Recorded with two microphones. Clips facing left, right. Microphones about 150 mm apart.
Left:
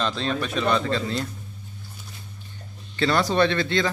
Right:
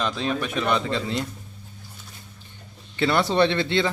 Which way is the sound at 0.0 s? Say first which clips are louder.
Even; 10° right (ahead or behind).